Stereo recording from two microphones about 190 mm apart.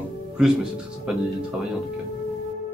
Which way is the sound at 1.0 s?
Centre (ahead or behind).